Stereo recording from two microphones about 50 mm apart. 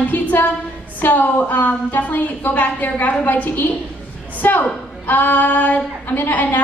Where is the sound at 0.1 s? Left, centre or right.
Left.